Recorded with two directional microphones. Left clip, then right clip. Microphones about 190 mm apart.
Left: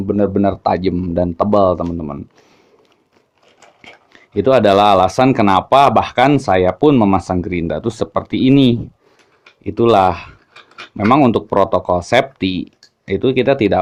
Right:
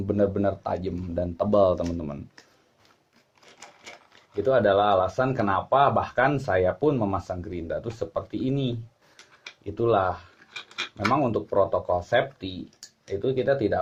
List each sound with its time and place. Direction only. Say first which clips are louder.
0.1 s speech: left 8 dB; 25° left (ahead or behind)
4.4 s speech: left 10 dB; 45° left (ahead or behind)